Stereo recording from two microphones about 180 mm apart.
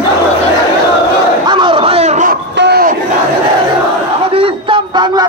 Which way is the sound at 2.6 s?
60° right (ahead or behind).